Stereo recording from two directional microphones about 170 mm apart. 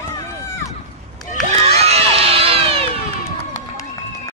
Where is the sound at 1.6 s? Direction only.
35° right (ahead or behind).